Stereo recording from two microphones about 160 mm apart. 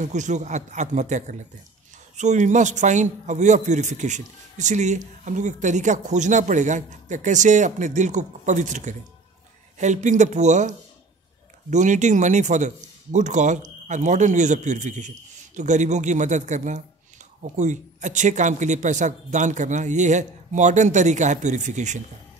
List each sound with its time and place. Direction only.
0.0 s a man's voice: 50° right (ahead or behind)